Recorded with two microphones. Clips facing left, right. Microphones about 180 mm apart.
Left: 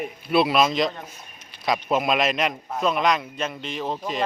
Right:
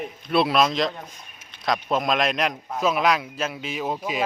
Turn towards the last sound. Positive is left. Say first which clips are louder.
# right 1 dB
turn(degrees=-10)  # may be behind; listen again after turning